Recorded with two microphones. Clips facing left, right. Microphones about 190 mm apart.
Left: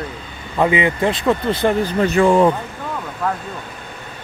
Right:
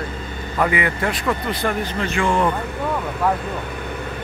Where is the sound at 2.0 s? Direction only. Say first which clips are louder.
Left 7 dB; 40° left (ahead or behind).